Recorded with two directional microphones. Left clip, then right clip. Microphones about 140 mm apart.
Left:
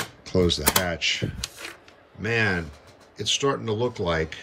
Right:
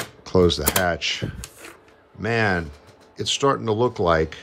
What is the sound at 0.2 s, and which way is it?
Speech, 15° right (ahead or behind).